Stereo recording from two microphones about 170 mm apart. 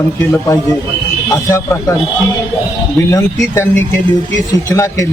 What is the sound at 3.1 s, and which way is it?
A man's voice, 15° left (ahead or behind).